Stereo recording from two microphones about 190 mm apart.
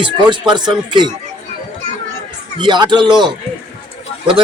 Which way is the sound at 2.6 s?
25° right (ahead or behind).